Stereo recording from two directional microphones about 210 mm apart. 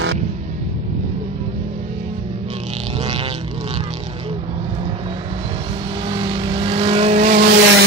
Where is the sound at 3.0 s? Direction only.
25° right (ahead or behind).